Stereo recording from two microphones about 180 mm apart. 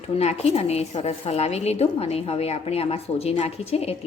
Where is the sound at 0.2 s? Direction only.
35° left (ahead or behind).